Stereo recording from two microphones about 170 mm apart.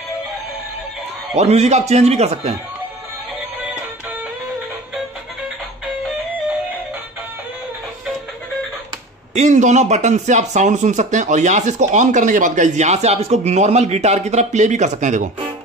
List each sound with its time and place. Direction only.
1.3 s a man's voice: 40° right (ahead or behind)
9.3 s speech: 45° right (ahead or behind)